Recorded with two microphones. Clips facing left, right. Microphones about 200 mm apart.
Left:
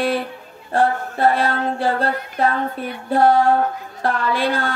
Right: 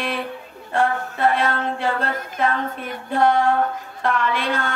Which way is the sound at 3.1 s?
35° left (ahead or behind).